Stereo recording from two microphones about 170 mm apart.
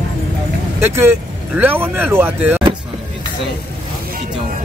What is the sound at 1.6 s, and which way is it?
Speech, 10° right (ahead or behind).